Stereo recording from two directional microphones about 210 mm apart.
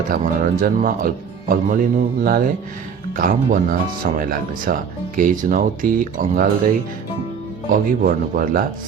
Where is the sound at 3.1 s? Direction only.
40° right (ahead or behind).